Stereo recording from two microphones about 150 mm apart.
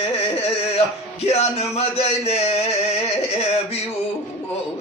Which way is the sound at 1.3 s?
45° left (ahead or behind).